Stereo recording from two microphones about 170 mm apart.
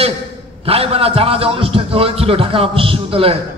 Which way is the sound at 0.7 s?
35° right (ahead or behind).